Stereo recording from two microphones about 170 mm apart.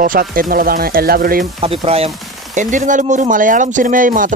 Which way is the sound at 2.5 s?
45° right (ahead or behind).